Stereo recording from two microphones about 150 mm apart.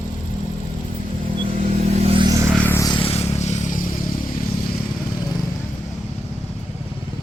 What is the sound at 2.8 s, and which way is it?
Vehicle, 30° left (ahead or behind).